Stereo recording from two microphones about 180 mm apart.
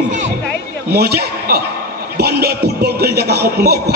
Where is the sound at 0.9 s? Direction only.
60° right (ahead or behind).